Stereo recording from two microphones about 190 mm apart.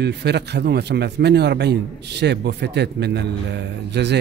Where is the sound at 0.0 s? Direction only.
60° right (ahead or behind).